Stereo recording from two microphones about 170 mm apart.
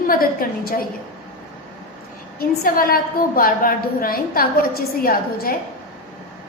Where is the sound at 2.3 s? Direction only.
60° left (ahead or behind).